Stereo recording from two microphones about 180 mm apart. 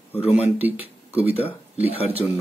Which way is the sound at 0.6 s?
10° right (ahead or behind).